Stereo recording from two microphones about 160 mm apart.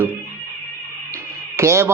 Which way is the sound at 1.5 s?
15° right (ahead or behind).